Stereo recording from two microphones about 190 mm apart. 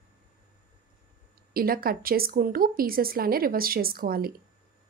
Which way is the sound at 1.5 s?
50° right (ahead or behind).